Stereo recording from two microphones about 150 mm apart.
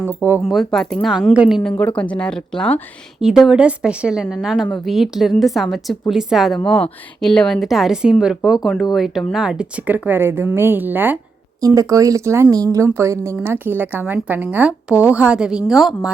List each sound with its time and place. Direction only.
0.0 s a woman's voice: 15° right (ahead or behind)
0.4 s a woman's voice: centre (ahead or behind)
1.7 s a woman's voice: 10° left (ahead or behind)